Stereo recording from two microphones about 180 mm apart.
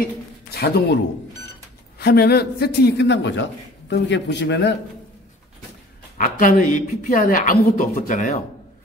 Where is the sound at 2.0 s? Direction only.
60° left (ahead or behind).